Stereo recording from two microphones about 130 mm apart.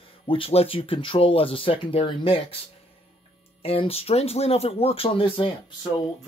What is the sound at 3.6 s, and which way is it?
Speech, 50° left (ahead or behind).